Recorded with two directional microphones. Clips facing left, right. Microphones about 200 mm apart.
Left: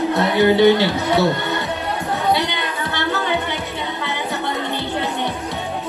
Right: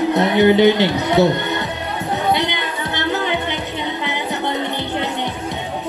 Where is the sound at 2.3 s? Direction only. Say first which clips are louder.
Right 1 dB; 20° right (ahead or behind).